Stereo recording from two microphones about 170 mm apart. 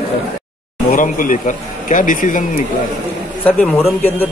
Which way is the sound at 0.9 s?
50° left (ahead or behind).